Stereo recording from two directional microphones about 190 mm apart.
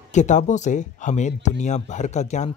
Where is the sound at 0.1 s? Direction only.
40° left (ahead or behind).